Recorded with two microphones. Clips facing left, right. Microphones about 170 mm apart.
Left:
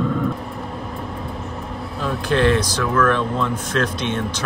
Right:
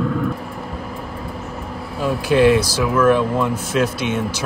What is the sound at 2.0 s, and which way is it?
Speech, 10° right (ahead or behind).